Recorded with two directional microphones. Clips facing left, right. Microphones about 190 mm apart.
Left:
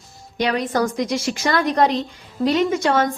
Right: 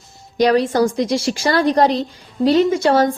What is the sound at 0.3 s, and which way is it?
A woman's voice, 35° right (ahead or behind).